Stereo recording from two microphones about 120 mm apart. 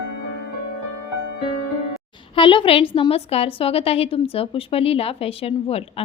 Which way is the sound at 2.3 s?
45° left (ahead or behind).